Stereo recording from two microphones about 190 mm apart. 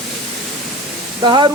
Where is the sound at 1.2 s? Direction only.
25° right (ahead or behind).